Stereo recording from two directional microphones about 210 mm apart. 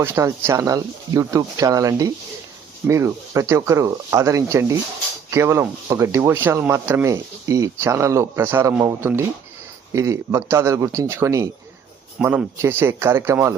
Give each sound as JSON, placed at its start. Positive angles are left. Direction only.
{"t": 0.0, "sound": "speech", "side_deg": -10}